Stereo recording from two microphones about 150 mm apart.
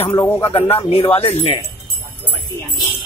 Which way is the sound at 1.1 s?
45° left (ahead or behind).